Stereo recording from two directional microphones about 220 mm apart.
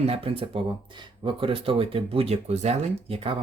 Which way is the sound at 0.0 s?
25° right (ahead or behind).